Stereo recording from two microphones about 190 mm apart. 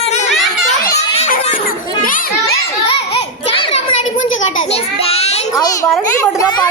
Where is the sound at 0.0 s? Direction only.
35° left (ahead or behind).